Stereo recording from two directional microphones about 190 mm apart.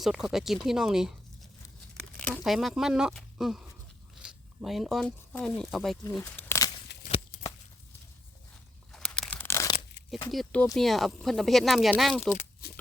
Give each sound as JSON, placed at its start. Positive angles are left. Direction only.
{"t": 0.0, "sound": "speech", "side_deg": 0}
{"t": 6.0, "sound": "speech", "side_deg": 15}
{"t": 6.9, "sound": "a sound", "side_deg": 60}
{"t": 8.9, "sound": "tearing", "side_deg": 5}
{"t": 10.3, "sound": "speech", "side_deg": 5}
{"t": 12.3, "sound": "crumpling", "side_deg": 40}